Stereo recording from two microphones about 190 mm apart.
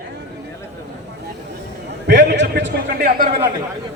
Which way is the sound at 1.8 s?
60° right (ahead or behind).